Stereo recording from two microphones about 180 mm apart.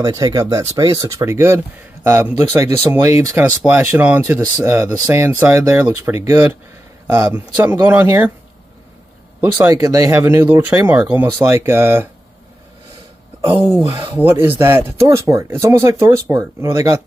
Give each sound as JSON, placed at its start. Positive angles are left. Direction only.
{"t": 0.0, "sound": "speech", "side_deg": -20}
{"t": 7.6, "sound": "speech", "side_deg": -10}
{"t": 9.4, "sound": "speech", "side_deg": -10}
{"t": 13.7, "sound": "speech", "side_deg": -15}